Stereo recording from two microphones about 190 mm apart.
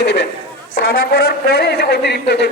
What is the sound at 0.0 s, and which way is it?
Speech, 65° left (ahead or behind).